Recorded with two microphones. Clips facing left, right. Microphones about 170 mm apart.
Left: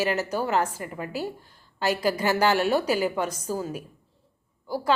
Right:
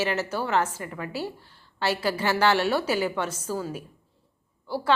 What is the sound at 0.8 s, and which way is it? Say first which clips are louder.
Speech: left 1 dB; 35° left (ahead or behind).